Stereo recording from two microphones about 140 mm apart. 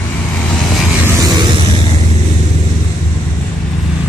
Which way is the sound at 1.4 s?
30° right (ahead or behind).